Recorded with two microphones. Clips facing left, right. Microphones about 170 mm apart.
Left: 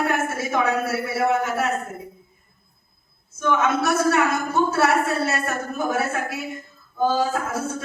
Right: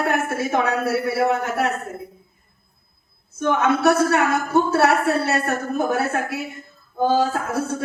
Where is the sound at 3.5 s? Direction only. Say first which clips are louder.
Right 3 dB; 65° right (ahead or behind).